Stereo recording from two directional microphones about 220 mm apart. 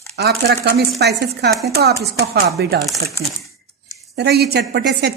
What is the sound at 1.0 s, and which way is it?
A woman's voice, 50° right (ahead or behind).